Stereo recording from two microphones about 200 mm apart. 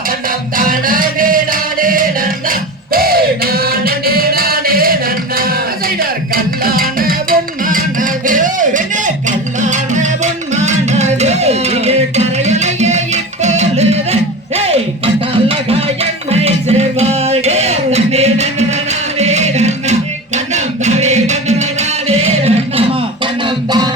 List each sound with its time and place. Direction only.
0.5 s music: 45° right (ahead or behind)
6.0 s music: 45° right (ahead or behind); by 22.8 s 30° right (ahead or behind)